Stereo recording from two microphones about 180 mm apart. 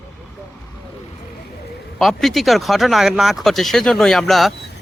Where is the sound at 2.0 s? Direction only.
Centre (ahead or behind).